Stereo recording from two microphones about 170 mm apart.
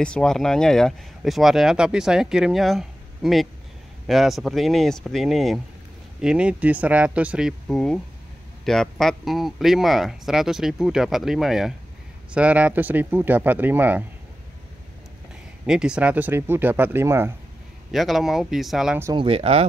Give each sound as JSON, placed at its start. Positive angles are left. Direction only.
{"t": 0.0, "sound": "speech", "side_deg": 5}
{"t": 15.6, "sound": "speech", "side_deg": -5}
{"t": 17.9, "sound": "speech", "side_deg": 0}
{"t": 19.1, "sound": "speech", "side_deg": -35}